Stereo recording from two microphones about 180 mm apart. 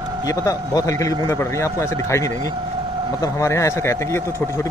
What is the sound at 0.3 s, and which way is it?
Speech, 20° left (ahead or behind).